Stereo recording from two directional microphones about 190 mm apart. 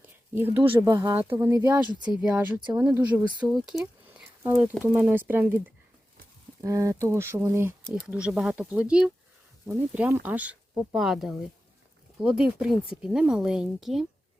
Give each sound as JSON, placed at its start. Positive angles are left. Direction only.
{"t": 0.8, "sound": "speech", "side_deg": -20}